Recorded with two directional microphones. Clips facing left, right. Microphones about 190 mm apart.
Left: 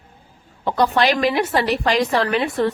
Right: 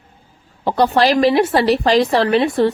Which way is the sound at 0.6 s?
35° right (ahead or behind).